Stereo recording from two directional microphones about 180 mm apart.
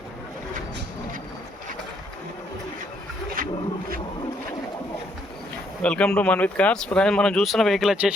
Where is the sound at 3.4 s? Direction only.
50° right (ahead or behind).